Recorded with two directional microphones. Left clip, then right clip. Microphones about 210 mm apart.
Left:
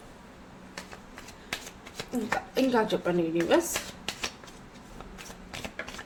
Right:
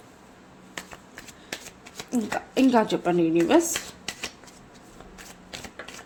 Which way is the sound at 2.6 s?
45° right (ahead or behind).